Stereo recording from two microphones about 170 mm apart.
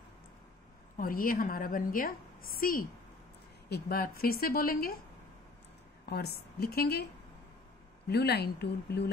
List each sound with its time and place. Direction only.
0.9 s a woman's voice: 55° left (ahead or behind)
6.0 s a woman's voice: 70° left (ahead or behind)
8.1 s a woman's voice: 75° left (ahead or behind)